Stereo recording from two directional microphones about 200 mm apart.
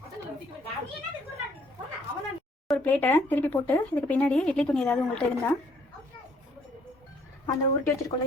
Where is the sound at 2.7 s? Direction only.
10° left (ahead or behind).